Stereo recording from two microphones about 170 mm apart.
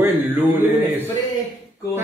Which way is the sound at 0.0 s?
10° right (ahead or behind).